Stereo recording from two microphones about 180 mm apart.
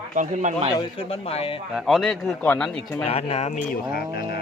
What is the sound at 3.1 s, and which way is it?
Speech, 35° left (ahead or behind).